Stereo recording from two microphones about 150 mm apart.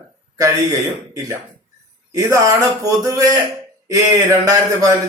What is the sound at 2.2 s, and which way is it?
Speech, 20° right (ahead or behind).